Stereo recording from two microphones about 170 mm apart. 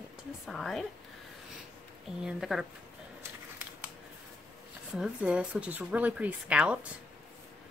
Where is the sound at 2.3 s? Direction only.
Centre (ahead or behind).